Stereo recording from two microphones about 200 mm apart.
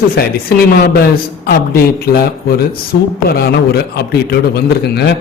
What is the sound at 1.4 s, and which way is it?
A man's voice, 50° left (ahead or behind).